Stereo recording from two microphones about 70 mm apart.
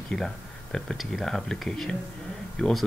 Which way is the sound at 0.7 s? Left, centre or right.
Centre.